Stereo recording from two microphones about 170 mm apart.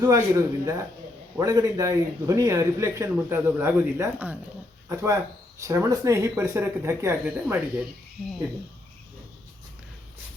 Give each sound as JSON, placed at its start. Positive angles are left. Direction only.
{"t": 0.0, "sound": "a man's voice", "side_deg": -20}